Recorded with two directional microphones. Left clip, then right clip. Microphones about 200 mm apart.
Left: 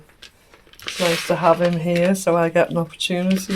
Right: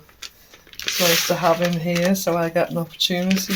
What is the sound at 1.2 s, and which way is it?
Speech, 30° left (ahead or behind).